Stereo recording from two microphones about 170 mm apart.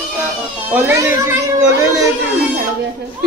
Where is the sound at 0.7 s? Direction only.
10° right (ahead or behind).